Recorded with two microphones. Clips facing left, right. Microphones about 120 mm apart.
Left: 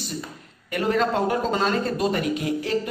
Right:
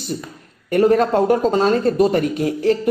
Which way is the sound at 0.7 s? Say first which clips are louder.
Right 8 dB; 45° right (ahead or behind).